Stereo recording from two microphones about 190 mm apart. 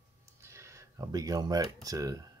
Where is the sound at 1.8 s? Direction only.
20° right (ahead or behind).